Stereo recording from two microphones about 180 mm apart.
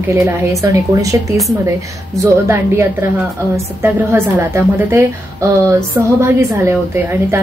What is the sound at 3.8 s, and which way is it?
A woman's voice, 15° right (ahead or behind).